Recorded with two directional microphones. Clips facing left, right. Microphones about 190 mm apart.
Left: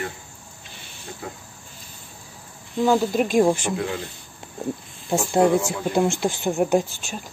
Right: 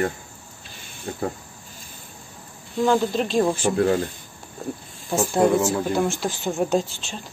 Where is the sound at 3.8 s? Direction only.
45° right (ahead or behind).